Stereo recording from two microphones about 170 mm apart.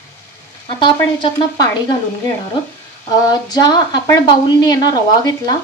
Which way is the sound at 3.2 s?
20° left (ahead or behind).